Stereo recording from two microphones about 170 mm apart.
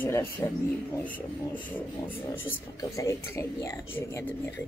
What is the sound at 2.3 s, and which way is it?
Speech, 15° left (ahead or behind).